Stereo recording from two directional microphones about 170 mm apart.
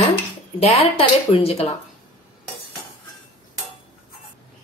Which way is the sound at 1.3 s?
35° left (ahead or behind).